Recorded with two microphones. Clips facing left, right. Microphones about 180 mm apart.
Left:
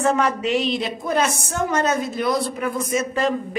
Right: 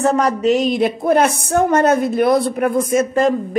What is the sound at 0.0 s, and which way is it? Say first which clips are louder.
A woman's voice: right 5 dB; 40° right (ahead or behind).